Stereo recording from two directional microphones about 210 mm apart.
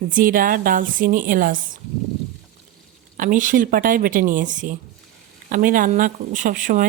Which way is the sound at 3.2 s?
40° right (ahead or behind).